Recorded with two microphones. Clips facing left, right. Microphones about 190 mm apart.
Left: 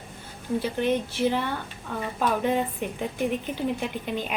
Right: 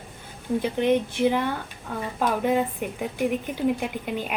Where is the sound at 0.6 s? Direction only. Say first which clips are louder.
Right 4 dB; 15° right (ahead or behind).